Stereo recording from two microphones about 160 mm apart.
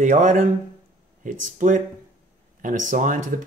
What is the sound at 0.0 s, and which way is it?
Speech, 50° right (ahead or behind).